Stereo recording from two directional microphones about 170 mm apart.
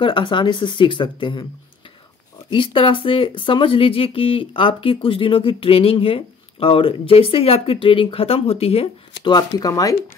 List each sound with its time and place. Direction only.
0.0 s speech: 30° left (ahead or behind)
2.5 s speech: 30° left (ahead or behind)
9.2 s speech: 25° left (ahead or behind)